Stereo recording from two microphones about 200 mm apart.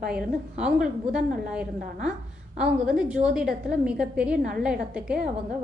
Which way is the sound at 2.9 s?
5° right (ahead or behind).